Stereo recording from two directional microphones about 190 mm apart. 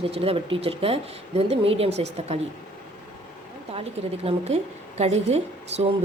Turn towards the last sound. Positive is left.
turn(degrees=-35)  # may be behind; listen again after turning